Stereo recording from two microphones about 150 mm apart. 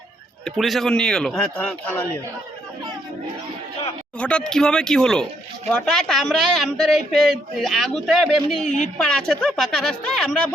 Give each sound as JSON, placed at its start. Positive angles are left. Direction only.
{"t": 0.4, "sound": "speech", "side_deg": 0}
{"t": 4.2, "sound": "speech", "side_deg": 5}
{"t": 8.6, "sound": "speech", "side_deg": 55}
{"t": 9.0, "sound": "speech", "side_deg": 5}